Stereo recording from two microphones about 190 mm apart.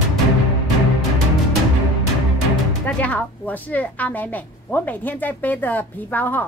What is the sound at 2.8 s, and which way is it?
Speech, 5° left (ahead or behind).